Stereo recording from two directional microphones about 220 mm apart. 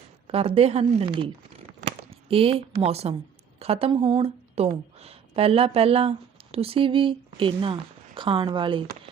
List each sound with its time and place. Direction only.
0.3 s speech: 25° right (ahead or behind)
2.0 s a sound: 25° right (ahead or behind)
2.8 s a woman's voice: 30° right (ahead or behind)